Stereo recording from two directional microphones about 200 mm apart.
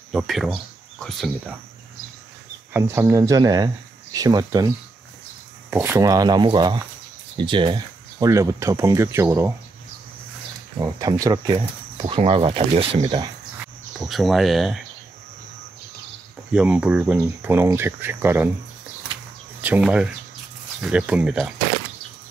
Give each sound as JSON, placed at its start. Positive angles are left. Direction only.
{"t": 0.1, "sound": "speech", "side_deg": 0}
{"t": 2.7, "sound": "speech", "side_deg": -10}
{"t": 10.8, "sound": "speech", "side_deg": -20}
{"t": 13.9, "sound": "speech", "side_deg": 0}
{"t": 16.5, "sound": "speech", "side_deg": -5}
{"t": 19.6, "sound": "speech", "side_deg": -5}